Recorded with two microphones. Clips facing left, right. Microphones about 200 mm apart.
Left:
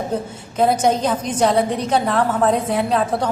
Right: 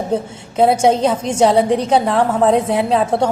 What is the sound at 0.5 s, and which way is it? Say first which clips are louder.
A woman's voice: right 4 dB; 30° right (ahead or behind).